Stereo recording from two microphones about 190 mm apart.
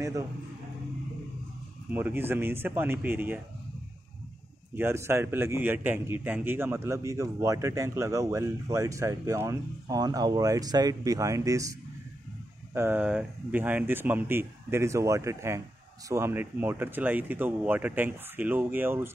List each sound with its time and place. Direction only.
0.0 s speech: 15° right (ahead or behind)
1.9 s a man's voice: 10° right (ahead or behind)
4.7 s a man's voice: 10° right (ahead or behind)
12.7 s a man's voice: 10° right (ahead or behind)